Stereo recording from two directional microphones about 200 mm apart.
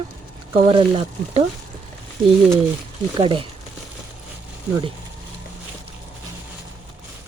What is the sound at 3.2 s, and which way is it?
Speech, 25° right (ahead or behind).